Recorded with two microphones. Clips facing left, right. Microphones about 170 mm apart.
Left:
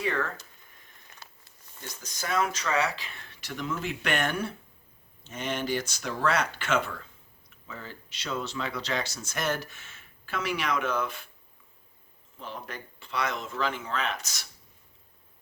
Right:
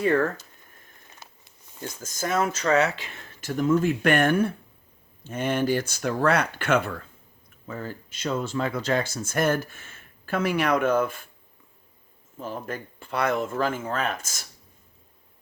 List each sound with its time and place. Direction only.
0.0 s speech: 50° right (ahead or behind)
2.0 s speech: 45° right (ahead or behind)
2.4 s speech: 30° right (ahead or behind)
3.2 s speech: 45° right (ahead or behind)
12.4 s speech: 45° right (ahead or behind)